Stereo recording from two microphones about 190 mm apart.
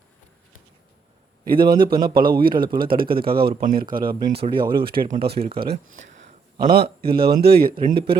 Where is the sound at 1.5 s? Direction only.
50° right (ahead or behind).